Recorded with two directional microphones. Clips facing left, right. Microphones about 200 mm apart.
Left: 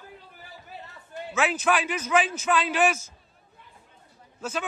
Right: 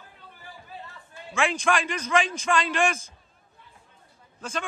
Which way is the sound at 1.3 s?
5° left (ahead or behind).